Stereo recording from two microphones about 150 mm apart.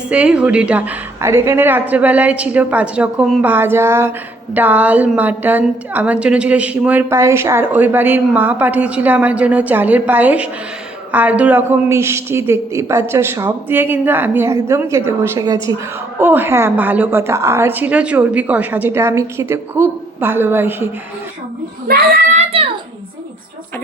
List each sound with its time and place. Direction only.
0.1 s a woman's voice: 5° right (ahead or behind)
21.8 s a child's voice: 90° right
22.4 s a sound: 40° right (ahead or behind)